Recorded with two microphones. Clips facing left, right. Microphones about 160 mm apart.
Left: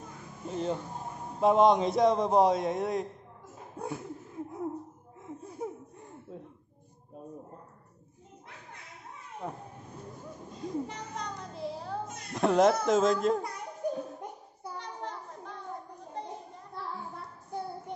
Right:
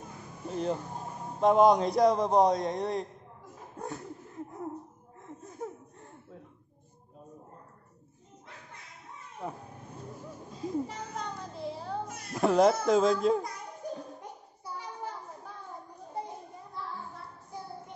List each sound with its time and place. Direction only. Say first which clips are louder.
0.5 s a man's voice: right 1 dB; centre (ahead or behind)
5.2 s laughter: left 2 dB; 10° left (ahead or behind)
9.4 s speech: even; centre (ahead or behind)
10.5 s a sound: right 2 dB; centre (ahead or behind)
12.4 s speech: even; centre (ahead or behind)
13.8 s a sound: left 6 dB; 55° left (ahead or behind)
14.8 s children playing: even; 5° right (ahead or behind)